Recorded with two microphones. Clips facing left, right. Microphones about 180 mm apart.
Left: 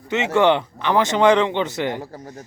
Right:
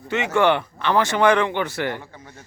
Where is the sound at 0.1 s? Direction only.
20° left (ahead or behind).